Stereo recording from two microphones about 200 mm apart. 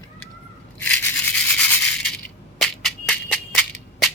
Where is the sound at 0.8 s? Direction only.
5° left (ahead or behind).